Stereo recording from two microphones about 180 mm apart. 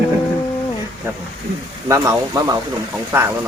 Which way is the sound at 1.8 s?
15° right (ahead or behind).